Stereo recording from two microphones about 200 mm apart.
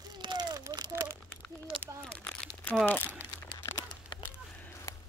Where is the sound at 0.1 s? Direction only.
20° right (ahead or behind).